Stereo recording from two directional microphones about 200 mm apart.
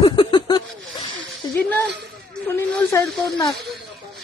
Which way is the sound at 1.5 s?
5° left (ahead or behind).